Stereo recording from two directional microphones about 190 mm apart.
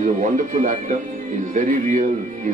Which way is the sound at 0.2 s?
40° right (ahead or behind).